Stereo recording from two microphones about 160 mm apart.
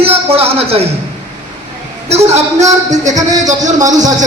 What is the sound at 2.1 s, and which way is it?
A man's voice, 40° right (ahead or behind).